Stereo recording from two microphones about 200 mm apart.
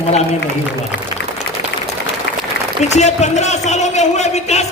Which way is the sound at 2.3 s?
60° left (ahead or behind).